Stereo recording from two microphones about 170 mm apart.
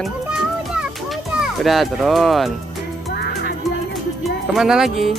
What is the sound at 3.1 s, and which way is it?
Music, 75° left (ahead or behind).